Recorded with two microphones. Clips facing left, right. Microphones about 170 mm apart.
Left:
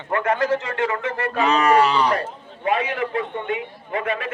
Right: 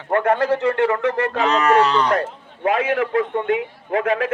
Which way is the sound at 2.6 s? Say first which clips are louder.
Right 3 dB; 90° right.